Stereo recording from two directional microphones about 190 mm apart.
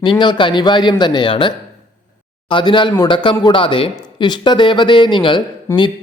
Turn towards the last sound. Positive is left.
turn(degrees=15)  # may be behind; listen again after turning